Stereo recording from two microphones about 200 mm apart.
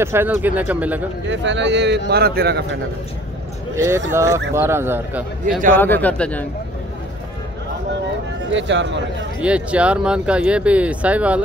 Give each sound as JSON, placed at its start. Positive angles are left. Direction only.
{"t": 0.0, "sound": "speech", "side_deg": -10}
{"t": 1.3, "sound": "a man's voice", "side_deg": -65}
{"t": 3.7, "sound": "speech", "side_deg": -15}
{"t": 5.8, "sound": "speech", "side_deg": 10}
{"t": 8.5, "sound": "a man's voice", "side_deg": -65}
{"t": 9.4, "sound": "speech", "side_deg": -5}